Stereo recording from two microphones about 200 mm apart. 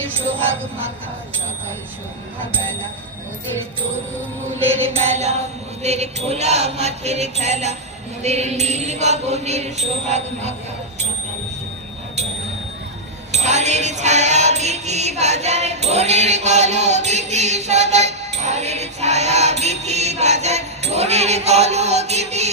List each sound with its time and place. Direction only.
5.0 s music: 35° right (ahead or behind)
13.3 s music: 35° right (ahead or behind)